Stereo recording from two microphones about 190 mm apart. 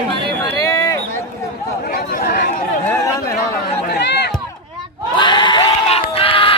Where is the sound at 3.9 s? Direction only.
60° left (ahead or behind).